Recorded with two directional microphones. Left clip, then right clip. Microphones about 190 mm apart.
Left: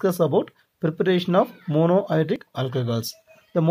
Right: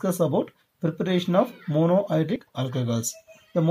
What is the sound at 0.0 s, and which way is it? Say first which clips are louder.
Speech: left 3 dB; 25° left (ahead or behind).